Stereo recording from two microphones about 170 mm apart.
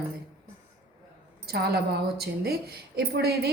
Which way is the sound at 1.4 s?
70° right (ahead or behind).